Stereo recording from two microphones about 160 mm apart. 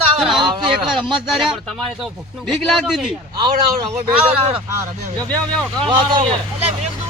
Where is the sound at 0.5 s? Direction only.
30° right (ahead or behind).